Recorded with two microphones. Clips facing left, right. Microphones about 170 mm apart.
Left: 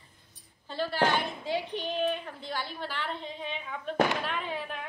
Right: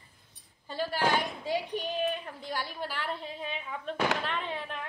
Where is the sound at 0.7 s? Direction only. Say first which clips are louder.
Left 1 dB; 10° right (ahead or behind).